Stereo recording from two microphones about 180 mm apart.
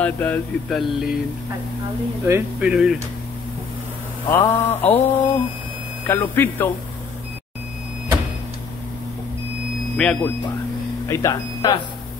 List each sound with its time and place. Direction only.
0.0 s speech: 10° left (ahead or behind)
2.2 s speech: 15° right (ahead or behind)
2.7 s speech: 5° right (ahead or behind)
4.3 s mantra: 10° left (ahead or behind)
9.9 s speech: 5° left (ahead or behind)
11.1 s mantra: 15° left (ahead or behind)